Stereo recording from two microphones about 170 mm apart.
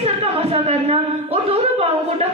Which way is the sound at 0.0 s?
35° right (ahead or behind).